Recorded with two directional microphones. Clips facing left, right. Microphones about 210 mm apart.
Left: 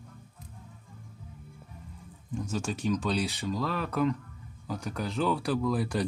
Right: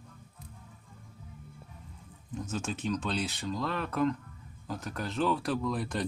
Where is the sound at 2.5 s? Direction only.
Centre (ahead or behind).